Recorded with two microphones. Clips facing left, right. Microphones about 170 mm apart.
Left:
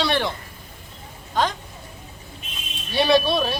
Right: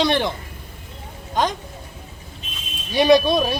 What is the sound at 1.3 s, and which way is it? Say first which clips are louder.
Speech: right 1 dB; 20° right (ahead or behind).